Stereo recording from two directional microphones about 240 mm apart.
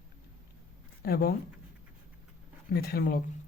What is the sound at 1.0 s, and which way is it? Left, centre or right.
Speech, left.